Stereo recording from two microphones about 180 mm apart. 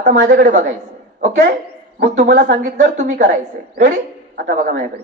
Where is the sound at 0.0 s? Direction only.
45° right (ahead or behind).